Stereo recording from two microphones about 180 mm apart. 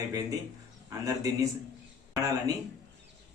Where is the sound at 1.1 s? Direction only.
20° right (ahead or behind).